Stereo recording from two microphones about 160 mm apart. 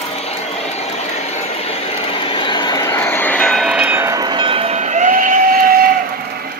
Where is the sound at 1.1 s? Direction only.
40° left (ahead or behind); by 5.9 s 65° right (ahead or behind).